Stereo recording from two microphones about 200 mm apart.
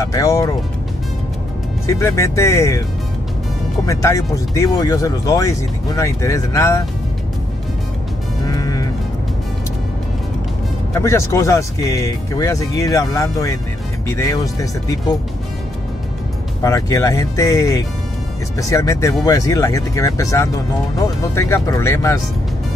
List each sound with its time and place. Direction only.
0.0 s speech: 15° left (ahead or behind)
1.9 s speech: 15° left (ahead or behind)
3.8 s speech: 15° left (ahead or behind)
8.5 s music: 15° left (ahead or behind)
10.9 s speech: 15° left (ahead or behind)
16.6 s speech: 15° left (ahead or behind)